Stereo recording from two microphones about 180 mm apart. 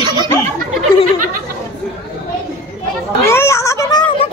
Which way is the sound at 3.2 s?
15° left (ahead or behind).